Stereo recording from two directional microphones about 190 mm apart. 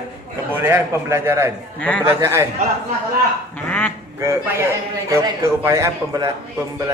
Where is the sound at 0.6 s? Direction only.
10° right (ahead or behind).